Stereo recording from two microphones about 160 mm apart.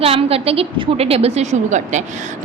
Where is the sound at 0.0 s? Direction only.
35° right (ahead or behind).